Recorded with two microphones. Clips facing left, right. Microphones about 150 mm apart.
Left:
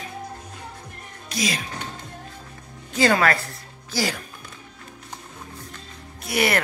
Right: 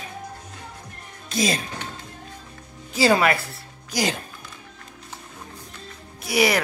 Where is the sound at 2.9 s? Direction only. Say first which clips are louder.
Right 1 dB; 10° right (ahead or behind).